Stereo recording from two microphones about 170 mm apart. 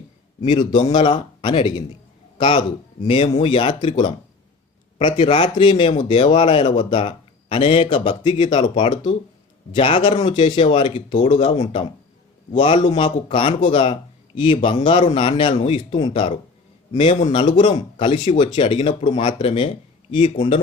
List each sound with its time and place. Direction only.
0.4 s a man's voice: 25° left (ahead or behind)